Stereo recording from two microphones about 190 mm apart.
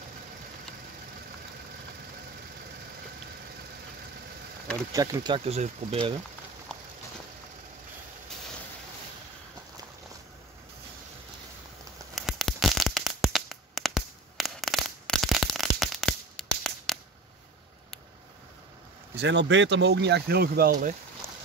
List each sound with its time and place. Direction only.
4.9 s speech: 20° right (ahead or behind)
12.2 s a sound: centre (ahead or behind)
19.1 s speech: 65° right (ahead or behind); by 20.9 s 50° right (ahead or behind)